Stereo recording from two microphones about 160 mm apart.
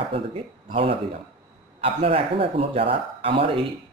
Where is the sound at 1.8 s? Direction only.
35° right (ahead or behind).